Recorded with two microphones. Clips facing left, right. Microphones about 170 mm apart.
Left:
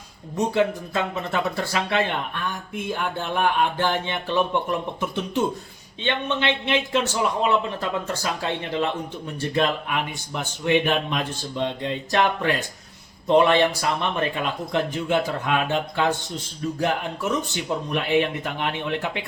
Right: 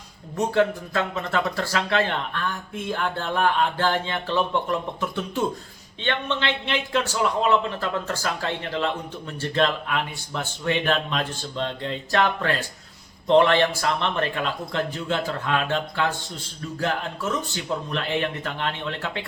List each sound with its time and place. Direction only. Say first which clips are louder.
0.3 s speech: even; 20° left (ahead or behind)